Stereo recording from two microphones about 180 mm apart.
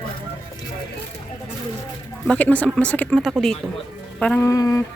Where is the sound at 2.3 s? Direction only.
5° left (ahead or behind).